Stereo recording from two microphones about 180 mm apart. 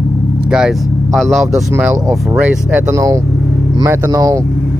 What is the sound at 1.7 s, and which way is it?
Speech, 15° right (ahead or behind).